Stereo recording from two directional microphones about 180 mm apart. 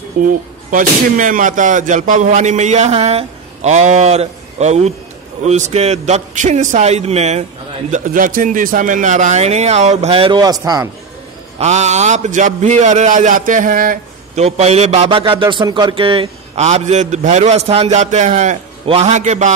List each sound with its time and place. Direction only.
0.2 s a man's voice: 50° right (ahead or behind)
7.9 s a man's voice: 50° right (ahead or behind); by 10.9 s 20° right (ahead or behind)
11.6 s a man's voice: 40° right (ahead or behind)
14.4 s a man's voice: 35° right (ahead or behind)